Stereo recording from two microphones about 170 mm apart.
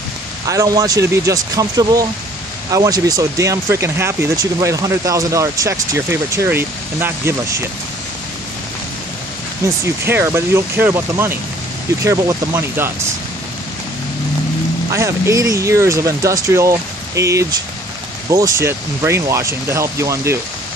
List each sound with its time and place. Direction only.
0.5 s speech: 20° right (ahead or behind)
9.8 s speech: 15° right (ahead or behind)
14.9 s speech: 15° right (ahead or behind)